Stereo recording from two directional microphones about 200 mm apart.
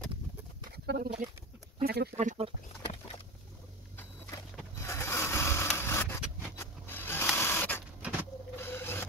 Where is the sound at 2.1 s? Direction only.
30° right (ahead or behind).